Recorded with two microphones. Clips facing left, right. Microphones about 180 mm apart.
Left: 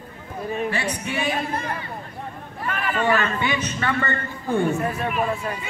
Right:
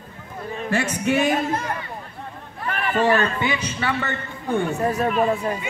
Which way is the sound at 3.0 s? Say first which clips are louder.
Right 3 dB; 35° right (ahead or behind).